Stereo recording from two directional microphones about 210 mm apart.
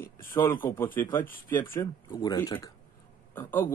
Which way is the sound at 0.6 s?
10° left (ahead or behind).